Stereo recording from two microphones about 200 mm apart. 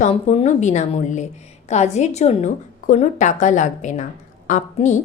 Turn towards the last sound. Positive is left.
turn(degrees=35)  # may be behind; listen again after turning